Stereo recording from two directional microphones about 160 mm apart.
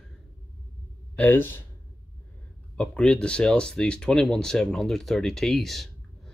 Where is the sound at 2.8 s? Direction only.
5° left (ahead or behind).